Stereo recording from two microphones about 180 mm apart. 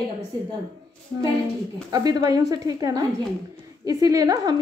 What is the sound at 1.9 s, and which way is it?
A woman's voice, 20° right (ahead or behind).